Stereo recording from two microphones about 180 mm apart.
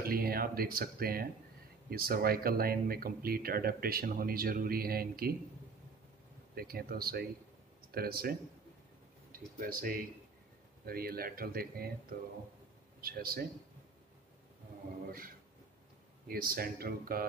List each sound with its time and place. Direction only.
0.0 s speech: 55° right (ahead or behind)
6.5 s a man's voice: 55° right (ahead or behind)
15.0 s a man's voice: 55° right (ahead or behind)